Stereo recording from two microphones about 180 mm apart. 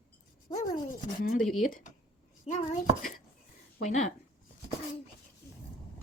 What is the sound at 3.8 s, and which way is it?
Speech, 40° left (ahead or behind).